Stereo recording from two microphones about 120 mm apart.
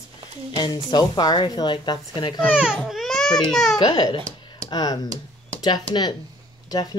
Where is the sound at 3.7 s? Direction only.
35° left (ahead or behind).